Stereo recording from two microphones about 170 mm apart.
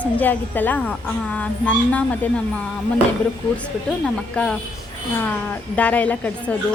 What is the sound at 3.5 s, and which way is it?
A woman's voice, 5° left (ahead or behind).